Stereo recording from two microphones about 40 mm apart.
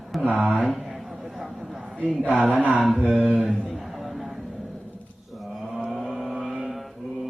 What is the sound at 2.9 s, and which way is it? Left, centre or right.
Speech, right.